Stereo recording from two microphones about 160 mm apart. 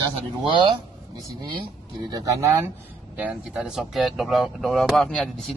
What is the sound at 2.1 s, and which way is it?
Speech, 20° right (ahead or behind).